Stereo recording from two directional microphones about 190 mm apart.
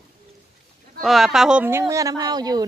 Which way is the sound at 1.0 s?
Centre (ahead or behind).